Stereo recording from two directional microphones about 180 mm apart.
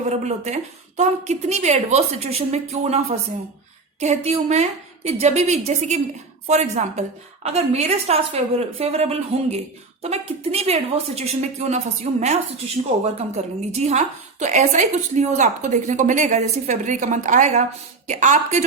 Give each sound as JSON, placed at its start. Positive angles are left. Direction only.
{"t": 0.1, "sound": "a woman's voice", "side_deg": -40}